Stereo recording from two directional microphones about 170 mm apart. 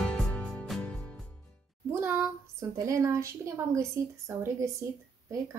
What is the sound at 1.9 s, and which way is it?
Music, 15° right (ahead or behind).